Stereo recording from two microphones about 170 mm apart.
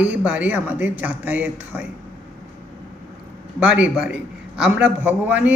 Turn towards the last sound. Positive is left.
turn(degrees=-10)  # may be behind; listen again after turning